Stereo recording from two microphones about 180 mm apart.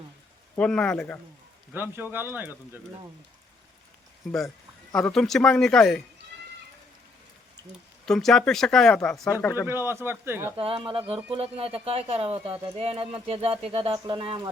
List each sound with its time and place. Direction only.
0.5 s speech: 5° left (ahead or behind)
1.7 s speech: 10° right (ahead or behind)
4.3 s speech: centre (ahead or behind)
8.0 s speech: centre (ahead or behind)
9.3 s speech: 15° left (ahead or behind)
9.6 s speech: 15° right (ahead or behind)
10.6 s speech: 30° right (ahead or behind)